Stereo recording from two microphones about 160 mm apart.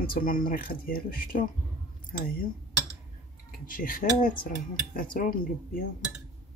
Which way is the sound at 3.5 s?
60° left (ahead or behind).